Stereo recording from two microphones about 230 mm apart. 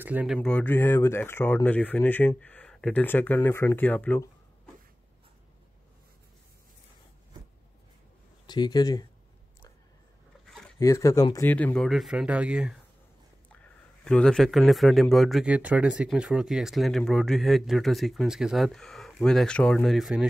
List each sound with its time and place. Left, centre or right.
0.0 s speech: centre
8.5 s speech: centre
10.4 s a sound: centre
10.8 s speech: centre
14.0 s speech: centre